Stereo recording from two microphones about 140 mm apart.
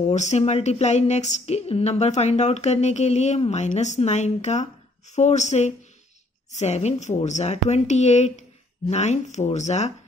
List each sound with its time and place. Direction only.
0.0 s speech: 55° left (ahead or behind)